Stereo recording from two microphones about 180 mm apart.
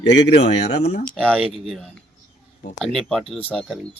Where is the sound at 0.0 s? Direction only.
70° left (ahead or behind).